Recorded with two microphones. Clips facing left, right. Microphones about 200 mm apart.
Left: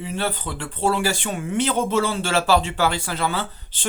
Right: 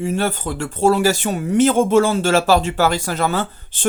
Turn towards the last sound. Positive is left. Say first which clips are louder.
# right 5 dB
turn(degrees=-45)  # may be behind; listen again after turning